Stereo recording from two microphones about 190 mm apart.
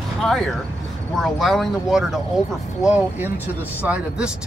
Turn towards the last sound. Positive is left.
turn(degrees=-5)  # may be behind; listen again after turning